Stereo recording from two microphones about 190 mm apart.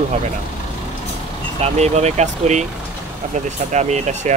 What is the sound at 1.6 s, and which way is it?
Speech, 35° right (ahead or behind).